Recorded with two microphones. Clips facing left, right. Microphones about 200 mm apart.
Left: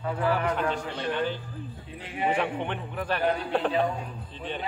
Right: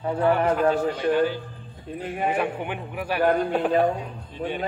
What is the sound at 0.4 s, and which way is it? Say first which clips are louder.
Speech: right 7 dB; 40° right (ahead or behind).